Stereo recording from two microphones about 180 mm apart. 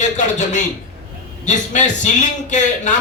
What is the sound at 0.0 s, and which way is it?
A man's voice, 45° left (ahead or behind).